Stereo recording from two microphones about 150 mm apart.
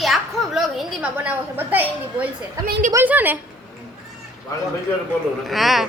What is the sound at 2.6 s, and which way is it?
Speech, 85° right.